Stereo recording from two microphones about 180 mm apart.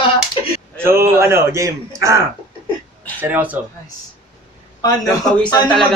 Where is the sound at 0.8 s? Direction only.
15° right (ahead or behind).